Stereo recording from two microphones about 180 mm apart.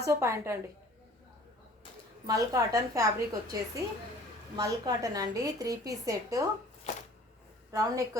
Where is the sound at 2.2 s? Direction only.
20° right (ahead or behind).